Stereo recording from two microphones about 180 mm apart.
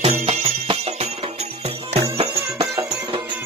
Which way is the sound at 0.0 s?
35° right (ahead or behind).